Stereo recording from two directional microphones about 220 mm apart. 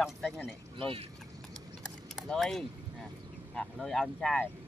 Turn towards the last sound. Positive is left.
turn(degrees=0)  # may be behind; listen again after turning